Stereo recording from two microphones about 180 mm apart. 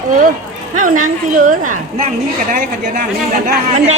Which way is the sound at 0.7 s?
45° right (ahead or behind).